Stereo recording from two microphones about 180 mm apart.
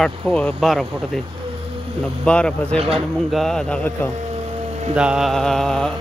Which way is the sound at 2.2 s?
5° left (ahead or behind).